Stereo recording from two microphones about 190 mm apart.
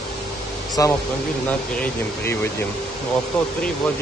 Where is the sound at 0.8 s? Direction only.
15° left (ahead or behind).